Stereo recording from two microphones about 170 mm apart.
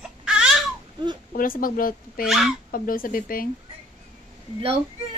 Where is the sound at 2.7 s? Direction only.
55° left (ahead or behind).